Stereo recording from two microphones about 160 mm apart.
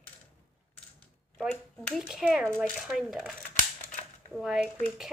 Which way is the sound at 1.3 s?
5° left (ahead or behind).